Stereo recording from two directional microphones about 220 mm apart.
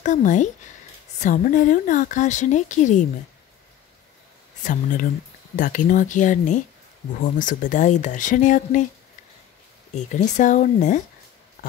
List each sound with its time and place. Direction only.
0.0 s a woman's voice: 35° left (ahead or behind)
5.6 s a woman's voice: 35° left (ahead or behind)
9.9 s a woman's voice: 35° left (ahead or behind)